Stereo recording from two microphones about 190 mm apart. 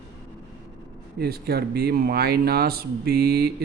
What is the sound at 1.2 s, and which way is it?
Speech, 55° right (ahead or behind).